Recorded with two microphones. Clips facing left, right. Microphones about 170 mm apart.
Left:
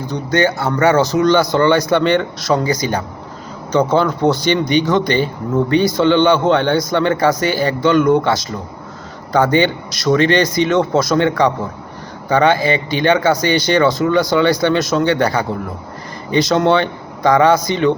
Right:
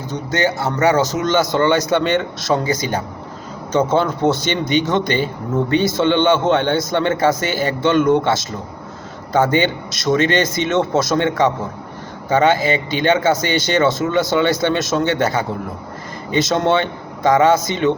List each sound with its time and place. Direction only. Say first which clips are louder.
0.1 s speech: left 3 dB; 20° right (ahead or behind)